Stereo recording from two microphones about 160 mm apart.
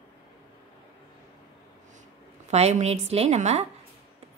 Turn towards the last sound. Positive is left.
turn(degrees=-45)  # may be behind; listen again after turning